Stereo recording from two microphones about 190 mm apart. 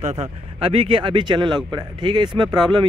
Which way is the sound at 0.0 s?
35° right (ahead or behind).